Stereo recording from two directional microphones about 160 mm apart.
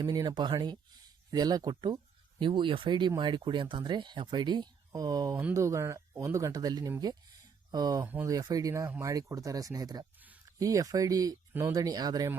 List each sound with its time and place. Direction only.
0.0 s speech: 25° right (ahead or behind)
8.0 s speech: 10° right (ahead or behind)
8.3 s speech: 25° right (ahead or behind)